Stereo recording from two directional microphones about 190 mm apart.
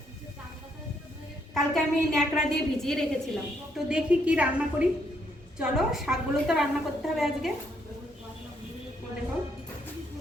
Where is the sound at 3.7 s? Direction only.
5° right (ahead or behind).